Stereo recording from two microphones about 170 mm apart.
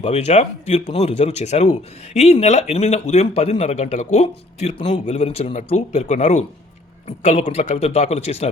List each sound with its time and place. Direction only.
0.0 s speech: 40° left (ahead or behind)